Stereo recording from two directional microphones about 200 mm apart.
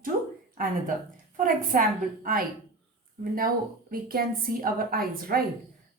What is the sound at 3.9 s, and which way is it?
A woman's voice, 45° right (ahead or behind).